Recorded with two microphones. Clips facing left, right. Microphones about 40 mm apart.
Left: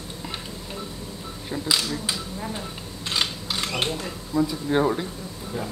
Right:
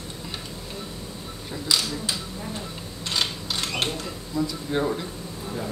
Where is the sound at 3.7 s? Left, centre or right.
Centre.